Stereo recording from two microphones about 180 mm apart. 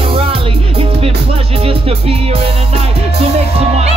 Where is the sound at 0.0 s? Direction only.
30° right (ahead or behind).